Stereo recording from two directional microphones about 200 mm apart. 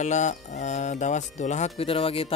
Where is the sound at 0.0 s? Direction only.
35° left (ahead or behind).